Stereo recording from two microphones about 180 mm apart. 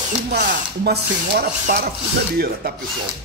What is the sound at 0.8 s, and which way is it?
Speech, 60° right (ahead or behind).